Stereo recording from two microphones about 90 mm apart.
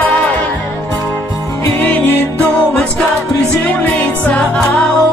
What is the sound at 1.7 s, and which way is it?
Music, 20° left (ahead or behind).